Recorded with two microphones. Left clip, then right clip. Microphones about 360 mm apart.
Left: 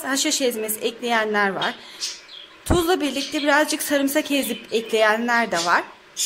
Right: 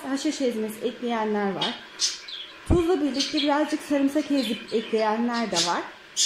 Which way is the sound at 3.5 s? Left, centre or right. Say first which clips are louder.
Left 9 dB; left.